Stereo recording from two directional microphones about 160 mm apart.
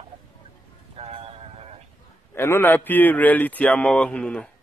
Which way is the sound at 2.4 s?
15° left (ahead or behind).